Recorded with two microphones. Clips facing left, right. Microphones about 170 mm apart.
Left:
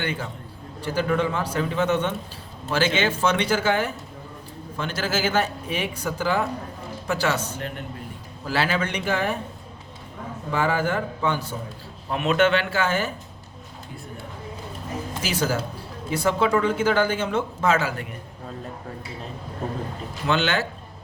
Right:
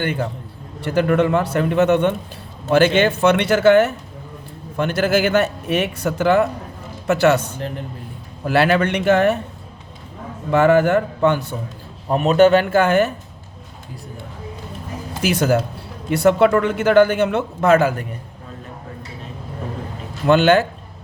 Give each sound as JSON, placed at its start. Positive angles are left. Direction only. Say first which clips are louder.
{"t": 0.0, "sound": "a man's voice", "louder": "right 6 dB", "side_deg": -50}
{"t": 0.9, "sound": "speech", "louder": "right 7 dB", "side_deg": -65}
{"t": 4.8, "sound": "a man's voice", "louder": "right 8 dB", "side_deg": -60}
{"t": 8.4, "sound": "speech", "louder": "right 8 dB", "side_deg": -60}
{"t": 10.5, "sound": "a man's voice", "louder": "right 10 dB", "side_deg": -70}
{"t": 12.0, "sound": "a man's voice", "louder": "right 7 dB", "side_deg": -40}
{"t": 15.2, "sound": "speech", "louder": "right 9 dB", "side_deg": -60}
{"t": 20.2, "sound": "a man's voice", "louder": "right 10 dB", "side_deg": -50}